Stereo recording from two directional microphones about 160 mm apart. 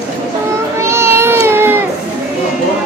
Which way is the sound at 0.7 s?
15° right (ahead or behind).